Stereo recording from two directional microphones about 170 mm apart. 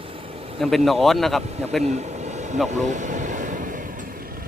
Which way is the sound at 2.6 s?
45° right (ahead or behind).